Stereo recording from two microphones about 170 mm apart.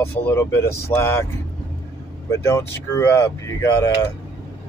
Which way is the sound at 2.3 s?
15° left (ahead or behind).